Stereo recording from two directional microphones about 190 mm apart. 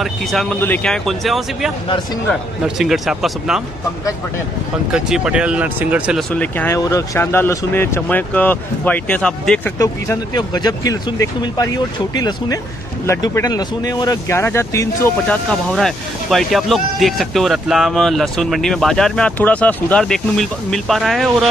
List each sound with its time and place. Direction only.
0.0 s speech: centre (ahead or behind)
4.9 s speech: 5° right (ahead or behind)
6.3 s speech: 10° left (ahead or behind)
9.8 s speech: 20° left (ahead or behind); by 21.5 s centre (ahead or behind)